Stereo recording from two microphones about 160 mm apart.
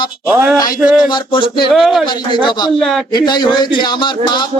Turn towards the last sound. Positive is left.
turn(degrees=30)  # may be behind; listen again after turning